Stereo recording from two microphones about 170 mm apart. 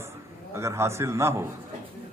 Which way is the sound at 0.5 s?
15° right (ahead or behind).